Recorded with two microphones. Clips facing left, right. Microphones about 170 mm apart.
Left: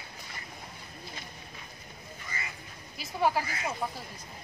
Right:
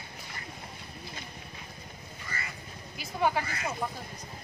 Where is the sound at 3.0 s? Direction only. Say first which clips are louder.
Even; centre (ahead or behind).